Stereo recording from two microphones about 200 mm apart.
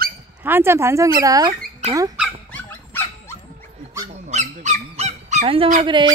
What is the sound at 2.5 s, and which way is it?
Dog, 10° left (ahead or behind).